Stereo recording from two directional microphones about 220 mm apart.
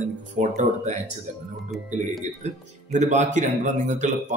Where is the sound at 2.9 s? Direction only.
35° right (ahead or behind).